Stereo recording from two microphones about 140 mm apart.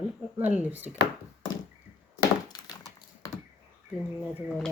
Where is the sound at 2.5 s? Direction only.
25° left (ahead or behind).